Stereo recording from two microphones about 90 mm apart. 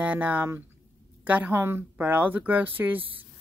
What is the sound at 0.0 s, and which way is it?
Speech, 15° right (ahead or behind).